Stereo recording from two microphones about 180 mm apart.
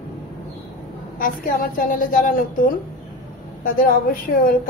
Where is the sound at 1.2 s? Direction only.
50° left (ahead or behind).